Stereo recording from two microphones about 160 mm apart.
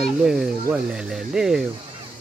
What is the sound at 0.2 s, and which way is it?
Speech, 5° right (ahead or behind).